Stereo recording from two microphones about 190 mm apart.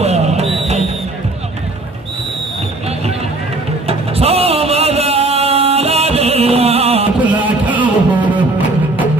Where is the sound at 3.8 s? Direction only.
30° right (ahead or behind).